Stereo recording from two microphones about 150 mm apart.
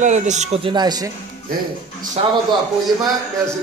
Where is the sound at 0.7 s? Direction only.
30° right (ahead or behind).